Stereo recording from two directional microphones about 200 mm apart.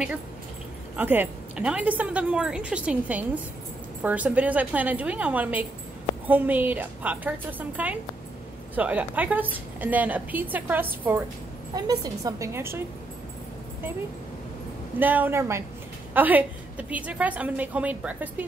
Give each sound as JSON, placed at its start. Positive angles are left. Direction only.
{"t": 0.9, "sound": "a woman's voice", "side_deg": -10}
{"t": 15.0, "sound": "a woman's voice", "side_deg": -10}